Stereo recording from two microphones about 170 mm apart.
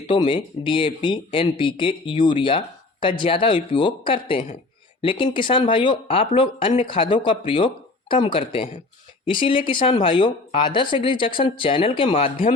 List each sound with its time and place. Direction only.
0.1 s speech: 30° left (ahead or behind)